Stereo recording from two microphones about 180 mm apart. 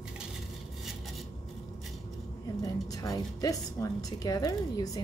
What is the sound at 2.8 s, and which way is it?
Speech, 20° left (ahead or behind).